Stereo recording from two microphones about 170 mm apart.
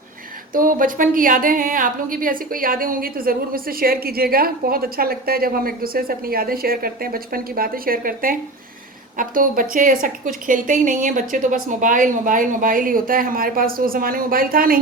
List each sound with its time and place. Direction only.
0.5 s a woman's voice: 55° right (ahead or behind)